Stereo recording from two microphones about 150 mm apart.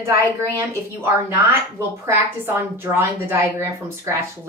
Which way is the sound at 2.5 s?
15° right (ahead or behind).